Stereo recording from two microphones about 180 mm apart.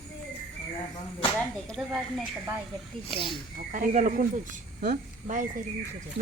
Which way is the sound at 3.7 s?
45° right (ahead or behind).